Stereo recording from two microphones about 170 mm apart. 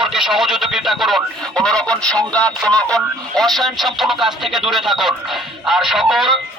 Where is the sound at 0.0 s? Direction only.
5° right (ahead or behind).